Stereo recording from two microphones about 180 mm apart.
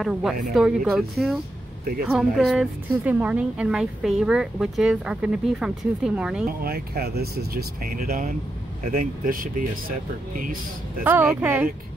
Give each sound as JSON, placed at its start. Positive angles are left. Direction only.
{"t": 0.0, "sound": "speech", "side_deg": 0}
{"t": 6.6, "sound": "speech", "side_deg": -60}
{"t": 8.1, "sound": "speech", "side_deg": -45}
{"t": 11.1, "sound": "speech", "side_deg": -10}